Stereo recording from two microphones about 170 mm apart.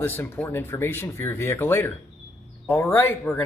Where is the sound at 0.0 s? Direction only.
15° left (ahead or behind).